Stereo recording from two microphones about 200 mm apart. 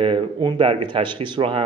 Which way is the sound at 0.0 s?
25° right (ahead or behind).